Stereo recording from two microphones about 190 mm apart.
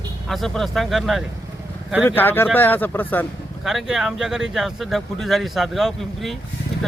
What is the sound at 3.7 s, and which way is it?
Speech, centre (ahead or behind).